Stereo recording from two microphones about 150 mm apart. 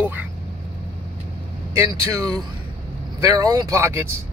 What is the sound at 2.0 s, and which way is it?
Speech, 25° right (ahead or behind).